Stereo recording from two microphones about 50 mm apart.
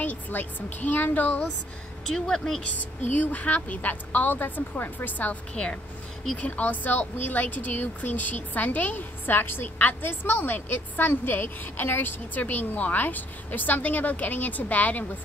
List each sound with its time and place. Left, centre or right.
0.0 s speech: left
2.0 s speech: centre
3.2 s speech: left
5.5 s speech: left